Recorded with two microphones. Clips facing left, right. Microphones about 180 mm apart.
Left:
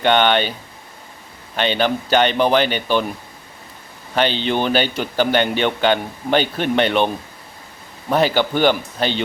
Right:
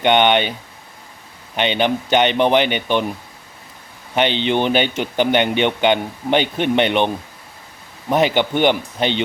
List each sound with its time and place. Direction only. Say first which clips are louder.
0.0 s speech: right 1 dB; 20° right (ahead or behind)
1.5 s speech: right 1 dB; 20° right (ahead or behind)
4.1 s speech: right 1 dB; 20° right (ahead or behind)
8.1 s speech: right 1 dB; 20° right (ahead or behind)